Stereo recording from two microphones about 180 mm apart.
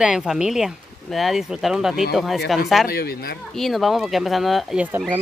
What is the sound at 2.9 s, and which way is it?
Speech, 60° left (ahead or behind).